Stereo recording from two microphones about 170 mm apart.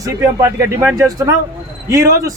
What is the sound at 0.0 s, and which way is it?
Speech, 15° right (ahead or behind).